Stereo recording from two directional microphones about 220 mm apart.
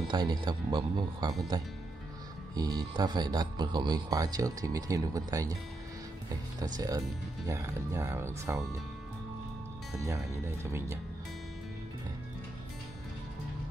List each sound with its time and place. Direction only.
0.1 s speech: 20° right (ahead or behind)
6.6 s speech: 15° right (ahead or behind)
10.0 s speech: 10° right (ahead or behind)